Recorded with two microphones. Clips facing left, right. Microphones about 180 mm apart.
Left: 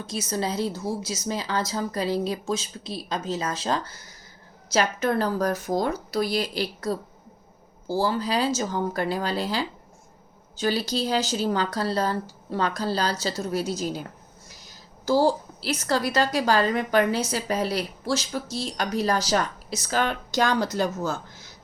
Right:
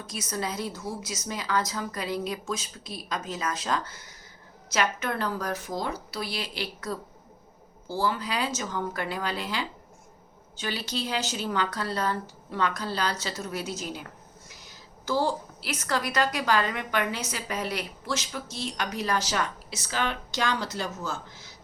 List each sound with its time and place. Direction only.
0.0 s a woman's voice: 30° left (ahead or behind)